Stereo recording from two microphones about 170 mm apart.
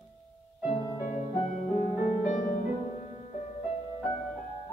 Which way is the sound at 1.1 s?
40° left (ahead or behind).